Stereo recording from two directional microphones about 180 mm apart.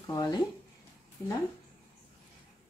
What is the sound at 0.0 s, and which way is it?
Speech, 20° left (ahead or behind).